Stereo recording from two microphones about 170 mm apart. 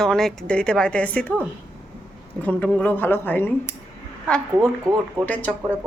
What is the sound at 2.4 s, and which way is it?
Speech, 10° left (ahead or behind).